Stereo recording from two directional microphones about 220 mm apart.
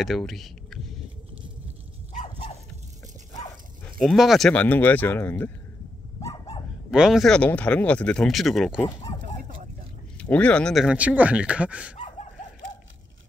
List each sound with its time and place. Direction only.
0.0 s speech: centre (ahead or behind)
3.8 s speech: centre (ahead or behind)
6.2 s dog: 25° left (ahead or behind)
6.9 s speech: 5° right (ahead or behind)
10.1 s speech: 5° left (ahead or behind)